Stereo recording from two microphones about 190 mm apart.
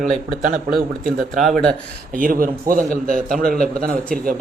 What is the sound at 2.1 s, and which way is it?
A man's voice, 45° right (ahead or behind).